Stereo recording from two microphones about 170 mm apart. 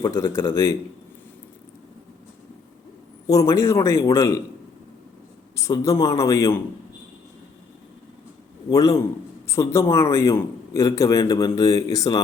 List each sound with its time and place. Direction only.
0.1 s speech: 15° left (ahead or behind)
3.2 s speech: 20° left (ahead or behind)
5.5 s speech: 20° left (ahead or behind)
8.7 s a man's voice: 20° left (ahead or behind)